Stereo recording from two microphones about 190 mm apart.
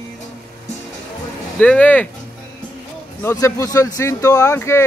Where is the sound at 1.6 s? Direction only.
5° left (ahead or behind).